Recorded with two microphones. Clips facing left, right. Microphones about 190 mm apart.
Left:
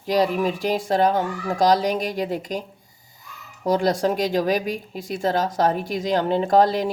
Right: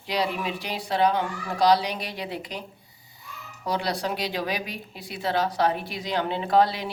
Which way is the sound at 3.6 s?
45° left (ahead or behind).